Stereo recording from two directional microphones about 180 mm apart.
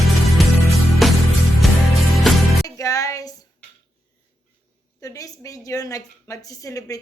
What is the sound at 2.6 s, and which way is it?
Music, 20° left (ahead or behind).